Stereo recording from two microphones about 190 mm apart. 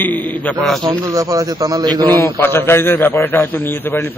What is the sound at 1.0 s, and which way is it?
A man's voice, 20° right (ahead or behind).